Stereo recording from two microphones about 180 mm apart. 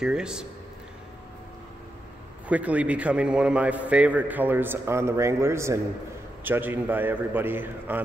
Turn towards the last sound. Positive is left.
turn(degrees=-10)  # may be behind; listen again after turning